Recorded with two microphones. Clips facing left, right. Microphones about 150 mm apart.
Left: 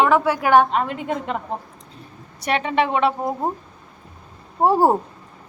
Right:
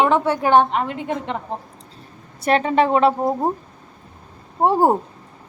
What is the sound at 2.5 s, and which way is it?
Speech, 35° right (ahead or behind).